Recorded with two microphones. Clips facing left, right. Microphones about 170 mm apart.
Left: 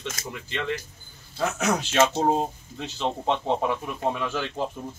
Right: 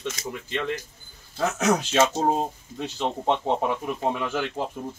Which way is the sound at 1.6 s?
15° right (ahead or behind).